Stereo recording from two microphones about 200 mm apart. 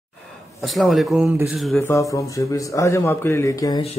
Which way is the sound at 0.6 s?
Centre (ahead or behind).